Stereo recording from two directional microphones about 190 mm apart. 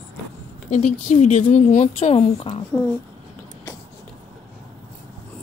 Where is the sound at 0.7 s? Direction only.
35° left (ahead or behind).